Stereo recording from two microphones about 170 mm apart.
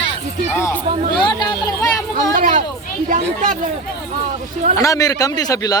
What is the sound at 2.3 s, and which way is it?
Speech, 50° right (ahead or behind).